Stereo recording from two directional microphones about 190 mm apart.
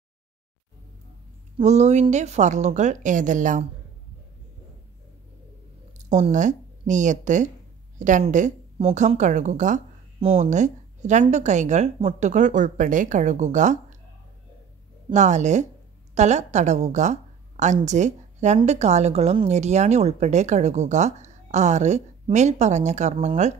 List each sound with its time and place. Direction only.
1.6 s a woman's voice: 35° right (ahead or behind)
6.0 s a woman's voice: 40° right (ahead or behind)
15.1 s a woman's voice: 40° right (ahead or behind)